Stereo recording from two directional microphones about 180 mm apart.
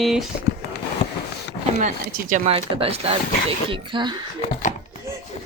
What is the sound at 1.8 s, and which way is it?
Speech, 45° right (ahead or behind).